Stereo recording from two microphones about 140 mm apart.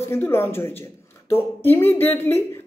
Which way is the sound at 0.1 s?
15° left (ahead or behind).